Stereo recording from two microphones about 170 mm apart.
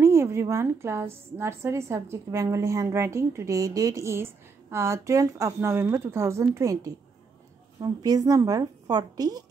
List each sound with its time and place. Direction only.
0.0 s a woman's voice: 15° right (ahead or behind)